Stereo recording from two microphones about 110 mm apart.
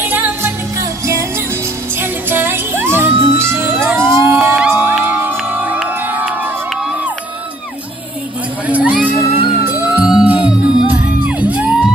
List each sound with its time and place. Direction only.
0.0 s music: 20° right (ahead or behind)
8.6 s music: 15° right (ahead or behind)